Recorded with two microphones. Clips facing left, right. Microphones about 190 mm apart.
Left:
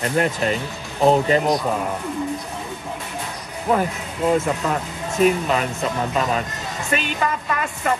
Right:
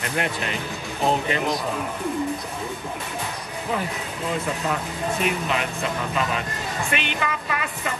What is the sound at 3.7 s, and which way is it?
Music, 50° left (ahead or behind).